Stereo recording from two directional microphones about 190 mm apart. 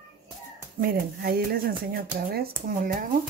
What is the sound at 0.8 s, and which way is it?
Speech, 50° right (ahead or behind).